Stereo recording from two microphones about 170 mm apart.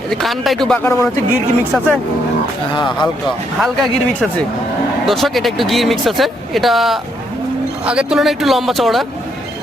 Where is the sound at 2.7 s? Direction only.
25° left (ahead or behind).